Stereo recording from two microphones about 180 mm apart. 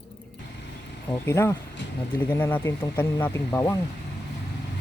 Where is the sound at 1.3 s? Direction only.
15° left (ahead or behind).